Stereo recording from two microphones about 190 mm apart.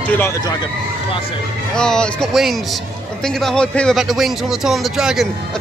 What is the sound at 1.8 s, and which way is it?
Speech, 5° left (ahead or behind).